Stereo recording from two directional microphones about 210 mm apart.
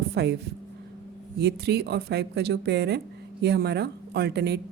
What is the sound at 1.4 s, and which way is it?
Speech, 50° right (ahead or behind).